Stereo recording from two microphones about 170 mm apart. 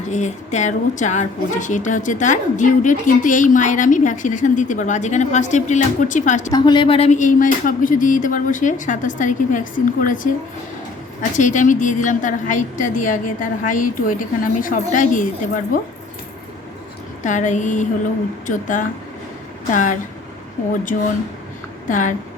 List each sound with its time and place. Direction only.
0.1 s a woman's voice: 45° left (ahead or behind)
6.5 s a woman's voice: 25° left (ahead or behind); by 10.2 s 50° left (ahead or behind)
11.2 s a woman's voice: 45° left (ahead or behind)
17.2 s a woman's voice: 45° left (ahead or behind)
21.8 s speech: 50° left (ahead or behind)